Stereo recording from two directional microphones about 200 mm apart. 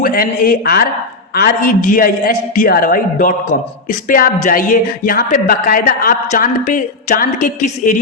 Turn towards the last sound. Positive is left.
turn(degrees=40)  # may be behind; listen again after turning